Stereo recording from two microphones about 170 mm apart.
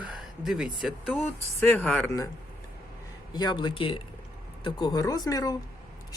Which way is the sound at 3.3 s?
25° left (ahead or behind).